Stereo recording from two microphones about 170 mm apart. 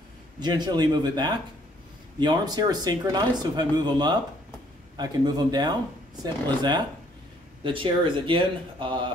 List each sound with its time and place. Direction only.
0.4 s speech: 25° right (ahead or behind)